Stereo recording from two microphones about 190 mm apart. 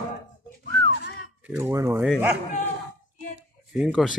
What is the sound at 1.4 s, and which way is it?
Speech, 10° right (ahead or behind).